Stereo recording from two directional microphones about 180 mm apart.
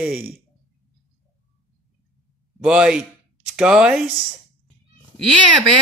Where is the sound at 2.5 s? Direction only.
5° right (ahead or behind).